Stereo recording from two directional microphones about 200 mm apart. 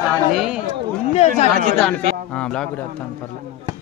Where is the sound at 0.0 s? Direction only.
Centre (ahead or behind).